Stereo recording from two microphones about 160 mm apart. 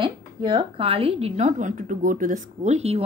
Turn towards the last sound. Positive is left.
turn(degrees=-40)  # may be behind; listen again after turning